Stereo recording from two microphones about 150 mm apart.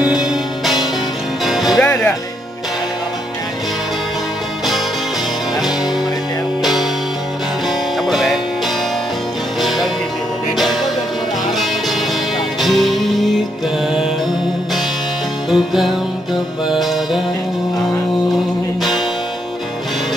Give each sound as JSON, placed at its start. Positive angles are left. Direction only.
{"t": 0.0, "sound": "music", "side_deg": -5}
{"t": 6.6, "sound": "music", "side_deg": 0}
{"t": 8.1, "sound": "music", "side_deg": 0}
{"t": 9.6, "sound": "music", "side_deg": 0}
{"t": 12.6, "sound": "music", "side_deg": 0}
{"t": 15.5, "sound": "music", "side_deg": 0}